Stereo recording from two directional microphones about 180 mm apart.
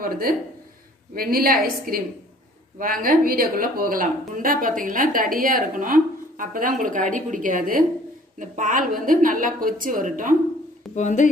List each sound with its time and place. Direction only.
0.0 s a woman's voice: 55° right (ahead or behind)
11.0 s speech: 40° left (ahead or behind)